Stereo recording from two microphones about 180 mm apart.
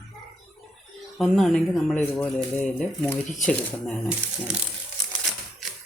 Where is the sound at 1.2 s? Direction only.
Centre (ahead or behind).